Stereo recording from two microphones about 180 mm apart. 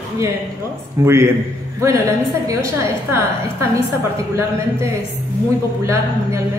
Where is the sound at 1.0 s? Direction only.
15° right (ahead or behind).